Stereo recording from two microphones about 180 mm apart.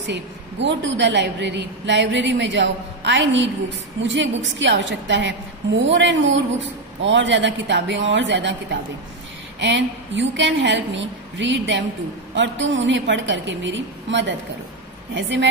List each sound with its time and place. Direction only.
0.0 s a woman's voice: 80° right
4.0 s a woman's voice: 90° right
9.6 s a woman's voice: 85° right